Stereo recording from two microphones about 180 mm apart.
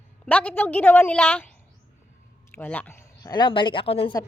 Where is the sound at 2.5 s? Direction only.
10° left (ahead or behind); by 4.1 s 30° left (ahead or behind).